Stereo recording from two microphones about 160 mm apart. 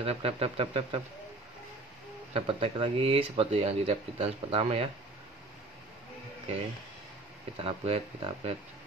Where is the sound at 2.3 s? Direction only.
35° right (ahead or behind).